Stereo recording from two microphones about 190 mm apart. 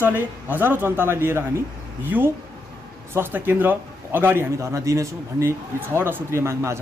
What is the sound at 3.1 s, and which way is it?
A man's voice, 10° right (ahead or behind).